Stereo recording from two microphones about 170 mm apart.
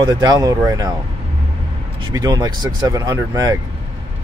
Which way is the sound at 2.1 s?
20° right (ahead or behind).